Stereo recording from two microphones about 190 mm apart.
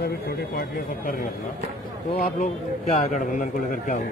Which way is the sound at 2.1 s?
50° left (ahead or behind).